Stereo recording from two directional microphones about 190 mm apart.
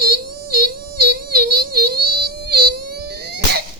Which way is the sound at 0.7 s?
50° right (ahead or behind).